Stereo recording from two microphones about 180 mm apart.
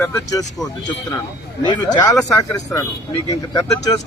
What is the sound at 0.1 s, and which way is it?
Speech, 20° left (ahead or behind).